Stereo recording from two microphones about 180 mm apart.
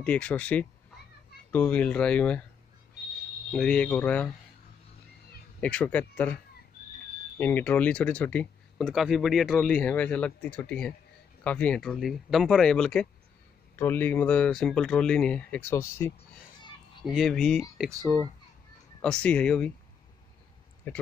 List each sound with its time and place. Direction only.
0.0 s speech: 5° left (ahead or behind)
3.5 s speech: 5° left (ahead or behind)
5.6 s speech: 5° left (ahead or behind)
17.0 s speech: centre (ahead or behind)
17.9 s speech: 20° right (ahead or behind)
18.9 s speech: 5° left (ahead or behind)
20.9 s speech: 10° left (ahead or behind)